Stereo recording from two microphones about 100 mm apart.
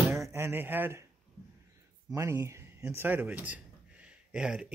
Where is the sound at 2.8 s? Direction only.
20° right (ahead or behind).